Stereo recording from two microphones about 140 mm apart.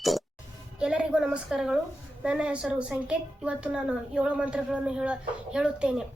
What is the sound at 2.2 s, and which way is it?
A woman's voice, 10° right (ahead or behind).